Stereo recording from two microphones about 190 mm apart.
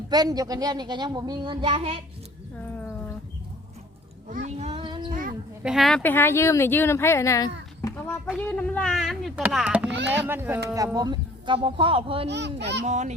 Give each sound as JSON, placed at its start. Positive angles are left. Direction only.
{"t": 0.1, "sound": "a child's voice", "side_deg": -20}
{"t": 4.3, "sound": "speech", "side_deg": -40}
{"t": 5.6, "sound": "speech", "side_deg": 0}
{"t": 6.0, "sound": "speech", "side_deg": 10}
{"t": 7.8, "sound": "a sound", "side_deg": 10}
{"t": 8.4, "sound": "a child's voice", "side_deg": 5}
{"t": 12.3, "sound": "speech", "side_deg": -65}
{"t": 12.8, "sound": "a child's voice", "side_deg": -40}